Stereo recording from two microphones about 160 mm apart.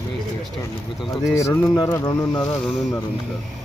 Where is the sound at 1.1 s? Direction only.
20° left (ahead or behind).